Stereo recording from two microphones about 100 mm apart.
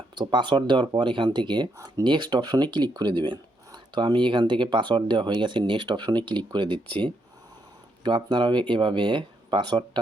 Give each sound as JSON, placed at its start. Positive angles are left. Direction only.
{"t": 0.2, "sound": "speech", "side_deg": -50}